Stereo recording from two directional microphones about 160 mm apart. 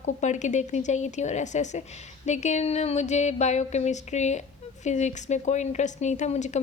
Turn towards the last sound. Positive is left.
turn(degrees=45)  # may be behind; listen again after turning